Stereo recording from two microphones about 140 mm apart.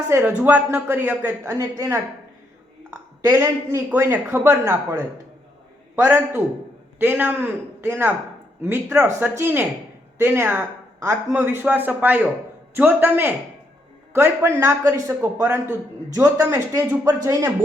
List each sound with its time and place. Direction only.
0.1 s a man's voice: 15° right (ahead or behind)